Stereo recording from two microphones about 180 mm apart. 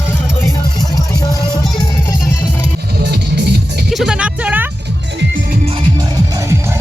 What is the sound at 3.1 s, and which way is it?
Music, 65° right (ahead or behind).